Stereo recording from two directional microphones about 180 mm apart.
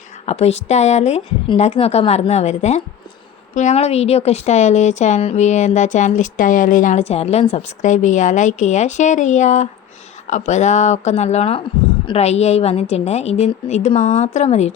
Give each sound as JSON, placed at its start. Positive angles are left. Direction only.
{"t": 0.3, "sound": "a woman's voice", "side_deg": 35}